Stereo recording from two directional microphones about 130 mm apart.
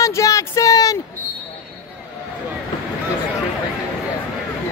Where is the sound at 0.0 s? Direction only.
25° left (ahead or behind).